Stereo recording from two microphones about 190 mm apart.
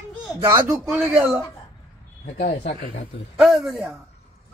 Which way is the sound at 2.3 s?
45° left (ahead or behind).